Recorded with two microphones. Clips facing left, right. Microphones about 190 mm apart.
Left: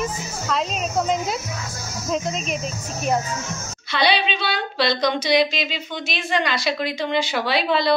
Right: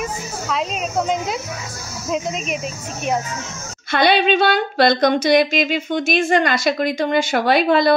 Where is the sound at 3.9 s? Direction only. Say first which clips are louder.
Right 6 dB; 50° right (ahead or behind).